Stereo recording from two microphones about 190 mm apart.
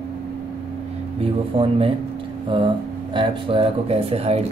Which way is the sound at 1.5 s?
30° right (ahead or behind).